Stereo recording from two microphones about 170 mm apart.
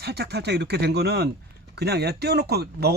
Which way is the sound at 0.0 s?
70° right (ahead or behind).